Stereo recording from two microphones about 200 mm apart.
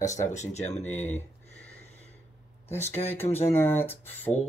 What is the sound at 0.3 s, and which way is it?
Speech, 35° left (ahead or behind).